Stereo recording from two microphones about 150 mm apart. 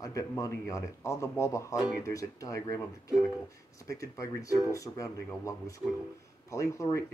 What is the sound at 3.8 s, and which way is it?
Speech, 20° left (ahead or behind).